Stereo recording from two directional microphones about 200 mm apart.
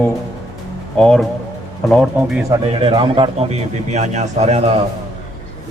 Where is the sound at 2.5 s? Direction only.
25° right (ahead or behind).